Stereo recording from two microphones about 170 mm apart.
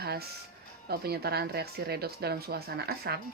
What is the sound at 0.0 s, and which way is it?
Music, 70° right (ahead or behind).